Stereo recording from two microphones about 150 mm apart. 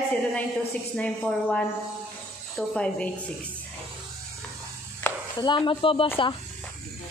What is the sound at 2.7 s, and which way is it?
Speech, 5° left (ahead or behind).